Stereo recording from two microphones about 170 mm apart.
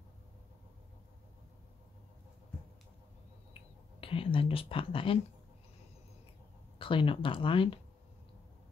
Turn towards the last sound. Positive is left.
turn(degrees=30)  # may be behind; listen again after turning